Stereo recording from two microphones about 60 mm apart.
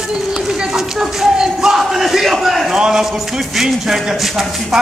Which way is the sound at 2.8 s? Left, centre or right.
Centre.